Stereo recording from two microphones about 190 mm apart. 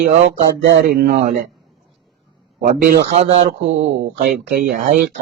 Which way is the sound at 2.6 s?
45° right (ahead or behind).